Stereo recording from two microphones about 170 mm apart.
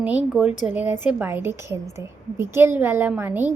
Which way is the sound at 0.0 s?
5° right (ahead or behind).